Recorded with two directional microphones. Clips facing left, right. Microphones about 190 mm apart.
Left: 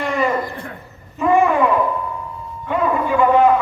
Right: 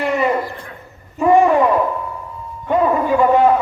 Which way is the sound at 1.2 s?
35° right (ahead or behind).